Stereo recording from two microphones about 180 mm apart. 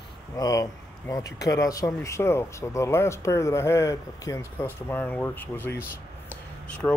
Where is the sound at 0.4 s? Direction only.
20° left (ahead or behind).